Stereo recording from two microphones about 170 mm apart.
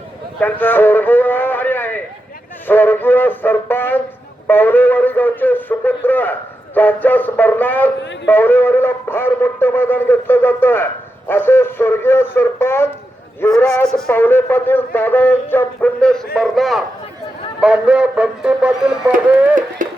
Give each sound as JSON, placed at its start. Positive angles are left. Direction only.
{"t": 0.3, "sound": "a sound", "side_deg": 10}
{"t": 2.6, "sound": "a man's voice", "side_deg": 10}
{"t": 19.1, "sound": "speech", "side_deg": -50}